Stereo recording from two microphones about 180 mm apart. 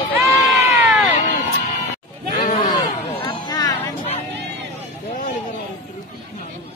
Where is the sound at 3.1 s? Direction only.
25° left (ahead or behind).